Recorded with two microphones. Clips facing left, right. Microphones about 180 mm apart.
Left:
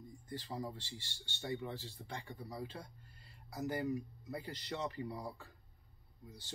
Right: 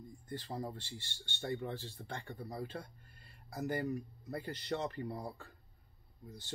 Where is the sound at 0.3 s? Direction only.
50° right (ahead or behind).